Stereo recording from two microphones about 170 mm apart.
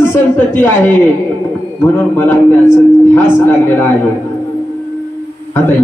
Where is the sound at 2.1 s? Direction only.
10° left (ahead or behind).